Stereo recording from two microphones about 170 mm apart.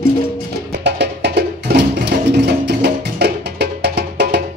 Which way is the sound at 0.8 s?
80° right.